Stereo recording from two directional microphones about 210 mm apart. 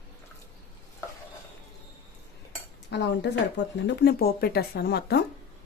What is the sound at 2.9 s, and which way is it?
Speech, 55° left (ahead or behind).